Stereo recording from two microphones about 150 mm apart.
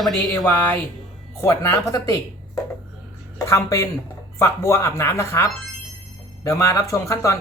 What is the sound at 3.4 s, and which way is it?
Speech, 20° left (ahead or behind).